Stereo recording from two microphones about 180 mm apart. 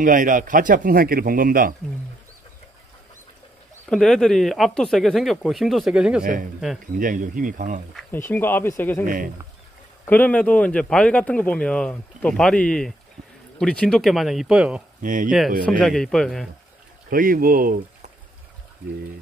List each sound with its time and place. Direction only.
0.0 s a man's voice: 50° right (ahead or behind)
3.9 s speech: 5° left (ahead or behind)
7.0 s a man's voice: 50° right (ahead or behind)
8.1 s a man's voice: 10° left (ahead or behind)
9.0 s a man's voice: 50° right (ahead or behind)
10.0 s a man's voice: 10° left (ahead or behind)
15.0 s speech: 50° right (ahead or behind)
15.2 s speech: centre (ahead or behind)
17.1 s a man's voice: 55° right (ahead or behind)